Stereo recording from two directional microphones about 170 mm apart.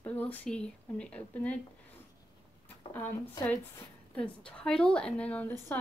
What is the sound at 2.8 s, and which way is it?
Speech, 30° left (ahead or behind).